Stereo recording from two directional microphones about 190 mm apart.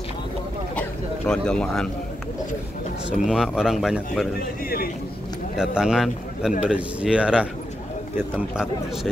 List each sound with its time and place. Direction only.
0.7 s a sound: 5° left (ahead or behind)
3.1 s speech: centre (ahead or behind)
4.4 s speech: 50° left (ahead or behind)
5.6 s speech: 5° right (ahead or behind)